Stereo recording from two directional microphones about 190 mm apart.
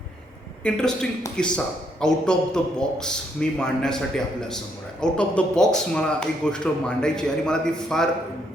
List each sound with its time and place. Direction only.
0.6 s a man's voice: 5° left (ahead or behind)